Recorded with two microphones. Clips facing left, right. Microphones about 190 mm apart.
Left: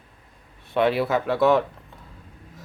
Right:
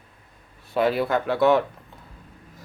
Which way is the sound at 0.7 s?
Centre (ahead or behind).